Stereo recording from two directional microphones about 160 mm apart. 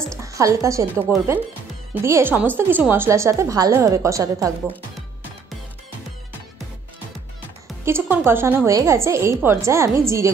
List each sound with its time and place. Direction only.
0.2 s a woman's voice: 20° right (ahead or behind)
7.8 s speech: 15° right (ahead or behind)